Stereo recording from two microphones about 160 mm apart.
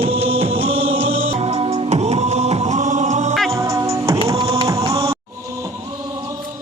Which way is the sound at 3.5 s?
20° right (ahead or behind).